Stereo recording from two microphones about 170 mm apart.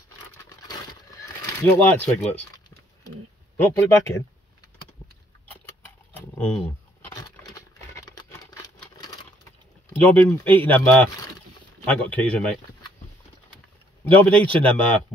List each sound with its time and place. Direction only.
1.4 s speech: 15° left (ahead or behind)
3.5 s speech: 15° left (ahead or behind)
6.1 s a sound: 10° left (ahead or behind)
7.4 s a sound: 20° left (ahead or behind)
10.0 s speech: 10° left (ahead or behind)
14.0 s speech: 10° left (ahead or behind)